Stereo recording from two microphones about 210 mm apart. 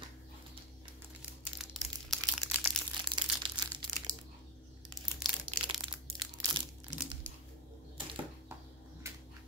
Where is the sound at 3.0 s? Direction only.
20° right (ahead or behind).